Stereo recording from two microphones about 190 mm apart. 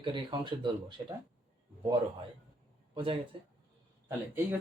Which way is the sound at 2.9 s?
30° right (ahead or behind).